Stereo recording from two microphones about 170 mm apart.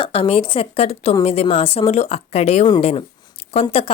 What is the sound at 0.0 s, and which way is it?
Speech, 35° left (ahead or behind).